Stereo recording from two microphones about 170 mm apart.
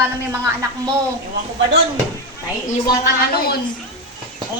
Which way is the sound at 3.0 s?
65° left (ahead or behind).